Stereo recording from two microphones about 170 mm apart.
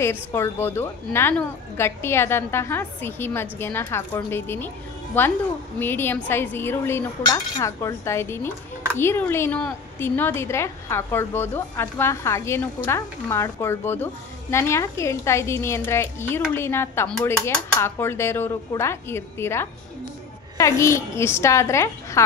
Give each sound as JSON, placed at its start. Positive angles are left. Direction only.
{"t": 0.0, "sound": "a woman's voice", "side_deg": 15}